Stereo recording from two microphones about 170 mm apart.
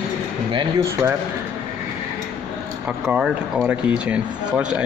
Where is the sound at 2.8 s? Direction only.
5° right (ahead or behind).